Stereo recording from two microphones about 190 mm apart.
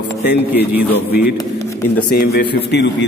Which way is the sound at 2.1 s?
55° left (ahead or behind).